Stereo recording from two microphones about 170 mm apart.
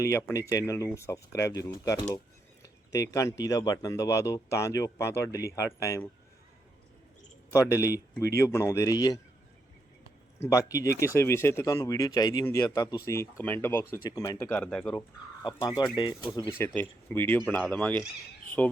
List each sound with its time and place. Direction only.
0.0 s speech: 15° left (ahead or behind)
7.5 s speech: 20° left (ahead or behind)
10.5 s speech: 20° left (ahead or behind)
15.4 s speech: 25° left (ahead or behind)
16.6 s speech: 10° left (ahead or behind)